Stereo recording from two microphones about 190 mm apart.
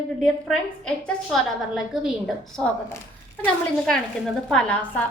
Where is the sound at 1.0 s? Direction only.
Centre (ahead or behind).